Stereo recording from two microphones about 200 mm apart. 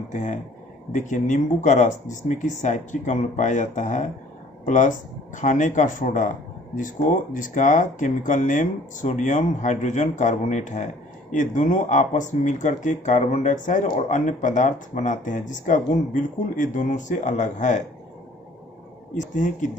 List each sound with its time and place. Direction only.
0.1 s speech: 35° left (ahead or behind)
19.1 s speech: 40° left (ahead or behind)